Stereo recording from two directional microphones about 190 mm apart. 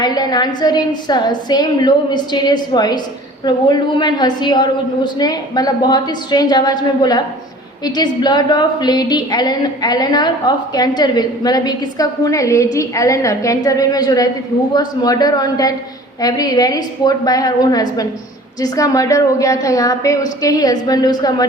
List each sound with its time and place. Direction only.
0.0 s a woman's voice: 20° left (ahead or behind)